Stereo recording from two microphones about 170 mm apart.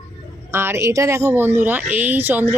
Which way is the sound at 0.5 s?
15° right (ahead or behind).